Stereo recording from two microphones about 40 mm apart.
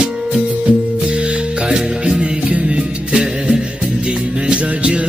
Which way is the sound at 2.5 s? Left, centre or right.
Right.